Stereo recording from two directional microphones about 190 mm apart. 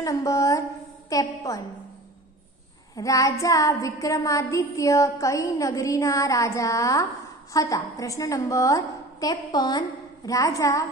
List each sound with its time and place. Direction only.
0.0 s child singing: 15° left (ahead or behind)
1.1 s a woman's voice: 20° left (ahead or behind)
3.0 s child singing: 15° left (ahead or behind)